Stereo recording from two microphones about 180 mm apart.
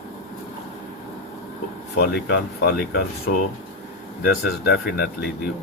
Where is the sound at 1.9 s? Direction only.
65° left (ahead or behind).